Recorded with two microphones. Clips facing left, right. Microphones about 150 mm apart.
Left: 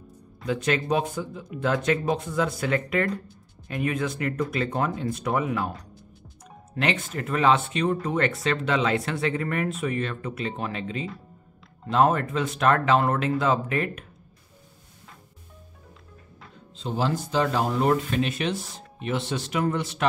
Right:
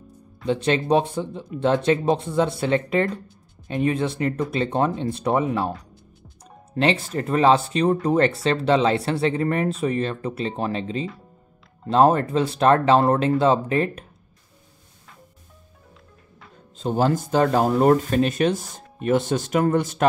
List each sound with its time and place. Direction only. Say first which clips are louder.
0.5 s speech: right 5 dB; 30° right (ahead or behind)
6.7 s speech: right 6 dB; 30° right (ahead or behind)
16.7 s speech: right 6 dB; 45° right (ahead or behind)